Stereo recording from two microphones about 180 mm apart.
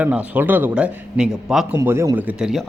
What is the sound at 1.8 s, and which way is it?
Speech, 15° right (ahead or behind).